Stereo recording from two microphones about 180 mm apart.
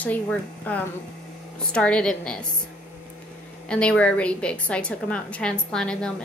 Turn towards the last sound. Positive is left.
turn(degrees=5)  # may be behind; listen again after turning